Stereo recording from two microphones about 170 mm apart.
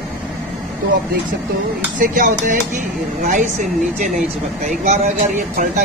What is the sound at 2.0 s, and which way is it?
Speech, 50° right (ahead or behind).